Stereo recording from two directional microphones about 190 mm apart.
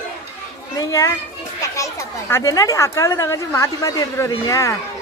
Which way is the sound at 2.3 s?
15° left (ahead or behind).